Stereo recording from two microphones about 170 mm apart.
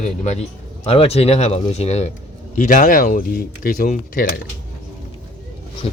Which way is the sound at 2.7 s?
50° left (ahead or behind).